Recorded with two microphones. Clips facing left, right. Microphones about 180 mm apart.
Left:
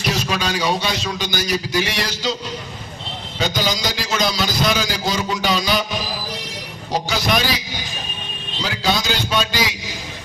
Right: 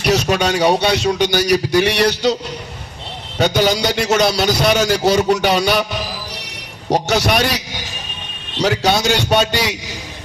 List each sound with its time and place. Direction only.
0.0 s a man's voice: 70° right (ahead or behind)
3.3 s a man's voice: 70° right (ahead or behind)
6.9 s a man's voice: 70° right (ahead or behind)
8.5 s a man's voice: 70° right (ahead or behind)